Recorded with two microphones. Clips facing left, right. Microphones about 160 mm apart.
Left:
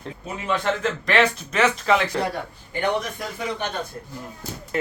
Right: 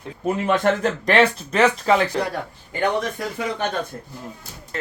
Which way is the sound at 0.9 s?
35° right (ahead or behind).